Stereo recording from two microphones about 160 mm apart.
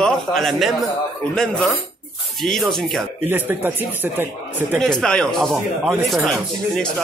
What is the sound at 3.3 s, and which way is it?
Speech, 10° right (ahead or behind).